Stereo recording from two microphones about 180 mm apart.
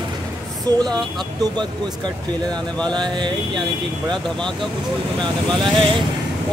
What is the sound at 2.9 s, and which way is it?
Speech, 25° right (ahead or behind).